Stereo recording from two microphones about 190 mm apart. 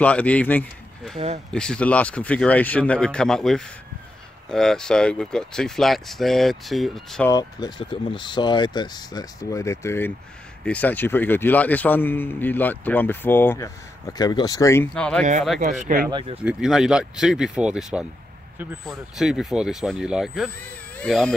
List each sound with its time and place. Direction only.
0.0 s speech: 5° left (ahead or behind)
1.1 s speech: 35° right (ahead or behind)
1.5 s a man's voice: 5° left (ahead or behind)
7.2 s a man's voice: 20° left (ahead or behind)
15.8 s speech: 45° right (ahead or behind)
16.1 s speech: 25° right (ahead or behind)
16.4 s speech: 5° right (ahead or behind)